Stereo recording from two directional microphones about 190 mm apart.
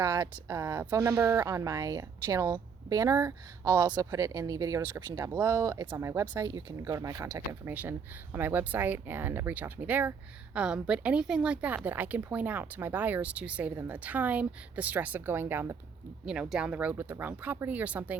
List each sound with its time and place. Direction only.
0.0 s a woman's voice: 15° right (ahead or behind)